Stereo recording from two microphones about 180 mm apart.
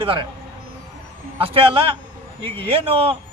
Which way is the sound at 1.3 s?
30° right (ahead or behind).